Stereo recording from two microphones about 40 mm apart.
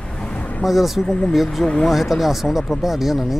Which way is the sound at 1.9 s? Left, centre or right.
Centre.